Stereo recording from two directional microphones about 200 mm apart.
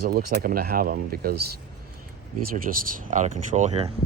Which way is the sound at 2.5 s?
45° right (ahead or behind).